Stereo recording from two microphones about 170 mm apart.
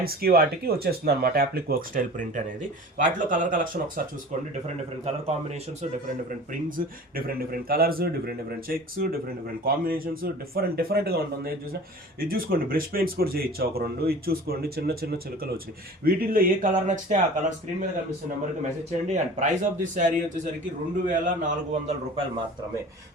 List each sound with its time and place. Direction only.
0.0 s speech: 65° right (ahead or behind)
4.6 s speech: 40° right (ahead or behind)
6.5 s speech: 55° right (ahead or behind)
16.0 s speech: 60° right (ahead or behind)
18.6 s speech: 40° right (ahead or behind)